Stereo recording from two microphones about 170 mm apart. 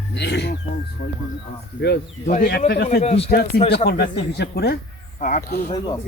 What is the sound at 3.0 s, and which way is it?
Speech, 40° left (ahead or behind).